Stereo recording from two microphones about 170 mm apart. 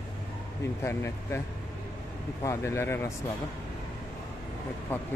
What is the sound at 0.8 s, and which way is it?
Speech, 15° left (ahead or behind).